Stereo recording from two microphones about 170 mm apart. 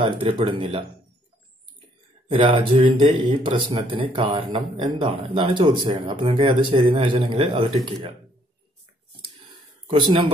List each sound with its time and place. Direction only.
0.0 s speech: 30° right (ahead or behind)
2.3 s speech: 30° right (ahead or behind)
9.8 s speech: 30° right (ahead or behind)